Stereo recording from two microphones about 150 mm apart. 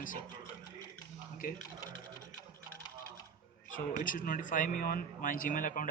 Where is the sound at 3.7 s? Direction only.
65° left (ahead or behind).